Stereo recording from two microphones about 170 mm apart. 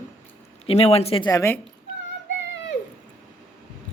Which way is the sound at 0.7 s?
35° left (ahead or behind).